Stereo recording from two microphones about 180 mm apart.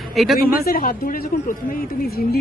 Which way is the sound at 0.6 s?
55° left (ahead or behind).